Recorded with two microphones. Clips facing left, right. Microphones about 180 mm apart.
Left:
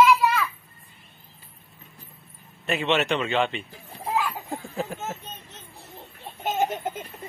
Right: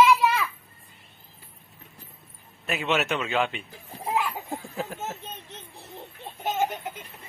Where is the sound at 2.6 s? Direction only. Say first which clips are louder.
Left 3 dB; centre (ahead or behind).